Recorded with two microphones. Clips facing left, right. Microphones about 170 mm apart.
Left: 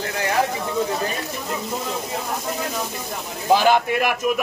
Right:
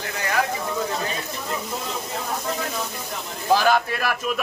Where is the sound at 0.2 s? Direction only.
30° left (ahead or behind).